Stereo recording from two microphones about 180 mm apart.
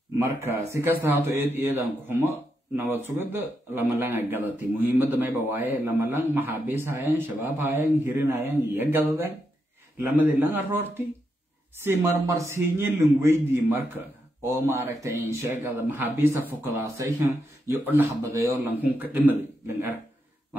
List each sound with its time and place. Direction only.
0.5 s speech: 15° right (ahead or behind)
10.1 s speech: 10° right (ahead or behind)